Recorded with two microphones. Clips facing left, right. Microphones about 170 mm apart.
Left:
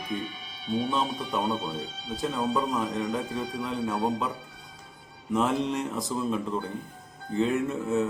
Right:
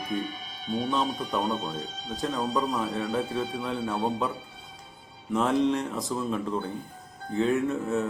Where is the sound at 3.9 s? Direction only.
25° right (ahead or behind).